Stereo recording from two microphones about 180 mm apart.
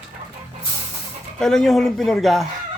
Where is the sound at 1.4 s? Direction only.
Centre (ahead or behind).